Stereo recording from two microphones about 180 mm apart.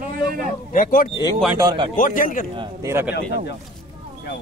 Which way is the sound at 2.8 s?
15° right (ahead or behind).